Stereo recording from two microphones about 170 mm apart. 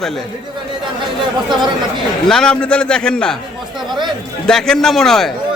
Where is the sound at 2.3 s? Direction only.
5° left (ahead or behind).